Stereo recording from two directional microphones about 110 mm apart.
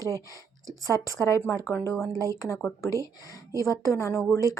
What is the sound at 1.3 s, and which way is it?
Speech, 25° left (ahead or behind).